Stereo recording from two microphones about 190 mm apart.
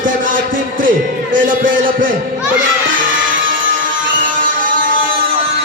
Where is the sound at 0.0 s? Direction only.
45° right (ahead or behind).